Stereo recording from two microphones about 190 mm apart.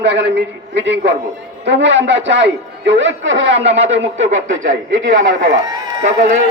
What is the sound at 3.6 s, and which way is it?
Speech, 35° right (ahead or behind).